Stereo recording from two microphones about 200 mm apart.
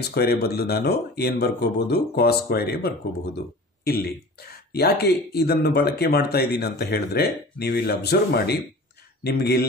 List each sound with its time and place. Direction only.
0.0 s speech: 50° left (ahead or behind)